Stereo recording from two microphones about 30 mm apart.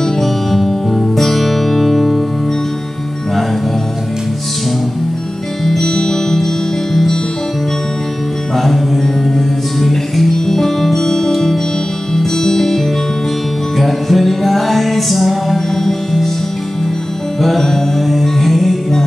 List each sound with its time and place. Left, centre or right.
0.0 s music: centre
5.7 s music: centre
8.5 s music: centre
15.7 s music: centre
17.4 s music: centre